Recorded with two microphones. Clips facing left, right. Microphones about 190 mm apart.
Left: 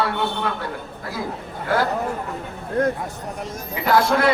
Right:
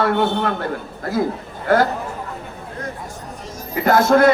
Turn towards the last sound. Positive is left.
turn(degrees=-45)  # may be behind; listen again after turning